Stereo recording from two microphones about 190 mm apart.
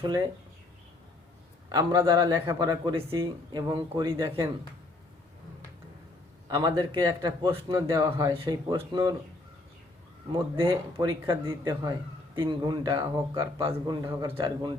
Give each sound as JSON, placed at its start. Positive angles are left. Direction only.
{"t": 0.0, "sound": "speech", "side_deg": -20}
{"t": 1.7, "sound": "speech", "side_deg": -20}
{"t": 6.5, "sound": "speech", "side_deg": -20}
{"t": 10.3, "sound": "speech", "side_deg": -25}
{"t": 13.7, "sound": "speech", "side_deg": -25}